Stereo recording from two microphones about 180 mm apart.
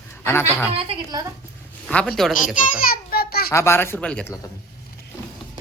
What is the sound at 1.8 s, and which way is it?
Speech, 5° left (ahead or behind).